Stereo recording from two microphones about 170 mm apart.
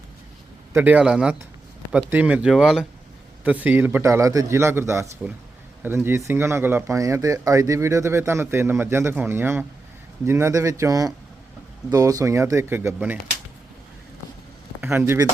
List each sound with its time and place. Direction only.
0.7 s speech: 10° right (ahead or behind)
14.8 s speech: 15° right (ahead or behind)